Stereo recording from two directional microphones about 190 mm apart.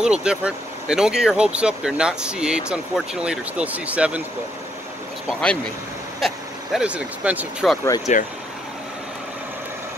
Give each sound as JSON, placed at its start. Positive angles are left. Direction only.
{"t": 0.0, "sound": "speech", "side_deg": -5}
{"t": 6.2, "sound": "speech", "side_deg": -5}
{"t": 8.1, "sound": "speech", "side_deg": 40}